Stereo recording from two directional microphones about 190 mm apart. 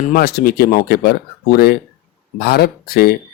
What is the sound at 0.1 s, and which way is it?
Speech, 55° left (ahead or behind).